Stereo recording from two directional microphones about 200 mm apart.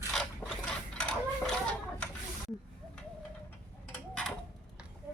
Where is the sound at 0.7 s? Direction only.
5° left (ahead or behind).